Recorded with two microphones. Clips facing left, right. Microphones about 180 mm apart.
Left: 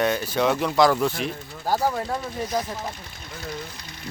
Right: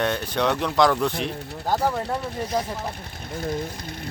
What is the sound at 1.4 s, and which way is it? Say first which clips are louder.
Speech: right 4 dB; 65° right (ahead or behind).